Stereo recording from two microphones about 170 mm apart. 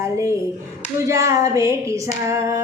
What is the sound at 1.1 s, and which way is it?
Female singing, 20° right (ahead or behind).